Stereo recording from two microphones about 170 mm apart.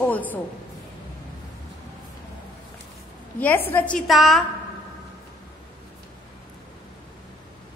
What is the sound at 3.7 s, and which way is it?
Speech, 10° left (ahead or behind).